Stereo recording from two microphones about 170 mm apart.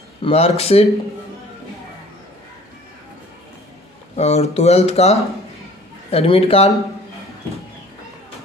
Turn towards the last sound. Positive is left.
turn(degrees=35)  # may be behind; listen again after turning